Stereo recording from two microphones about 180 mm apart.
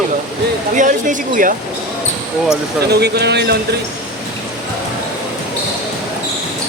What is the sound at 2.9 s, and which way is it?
Speech, 65° right (ahead or behind).